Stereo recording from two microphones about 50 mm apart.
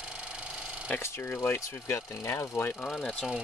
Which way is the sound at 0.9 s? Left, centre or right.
Left.